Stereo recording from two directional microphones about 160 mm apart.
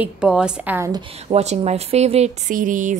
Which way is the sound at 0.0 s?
5° right (ahead or behind).